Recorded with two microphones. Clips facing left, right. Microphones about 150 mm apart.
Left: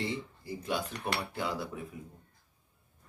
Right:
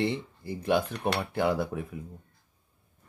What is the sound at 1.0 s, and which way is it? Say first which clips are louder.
Cutlery: right 4 dB; 55° right (ahead or behind).